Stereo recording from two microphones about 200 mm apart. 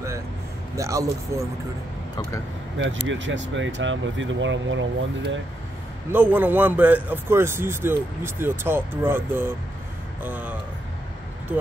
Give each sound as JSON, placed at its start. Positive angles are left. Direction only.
{"t": 0.7, "sound": "a man's voice", "side_deg": -15}
{"t": 2.8, "sound": "speech", "side_deg": -70}
{"t": 6.1, "sound": "a man's voice", "side_deg": -10}